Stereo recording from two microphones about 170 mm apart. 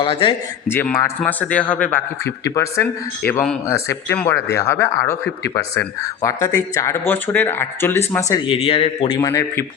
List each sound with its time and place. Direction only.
0.0 s a man's voice: 30° left (ahead or behind)
0.7 s a man's voice: 15° left (ahead or behind)
8.4 s a man's voice: 35° left (ahead or behind); by 9.6 s 20° left (ahead or behind)